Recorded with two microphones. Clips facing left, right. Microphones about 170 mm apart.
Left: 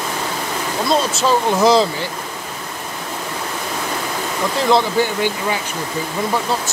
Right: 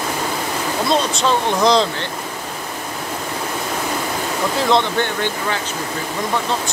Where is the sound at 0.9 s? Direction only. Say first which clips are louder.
Left 2 dB; 5° left (ahead or behind).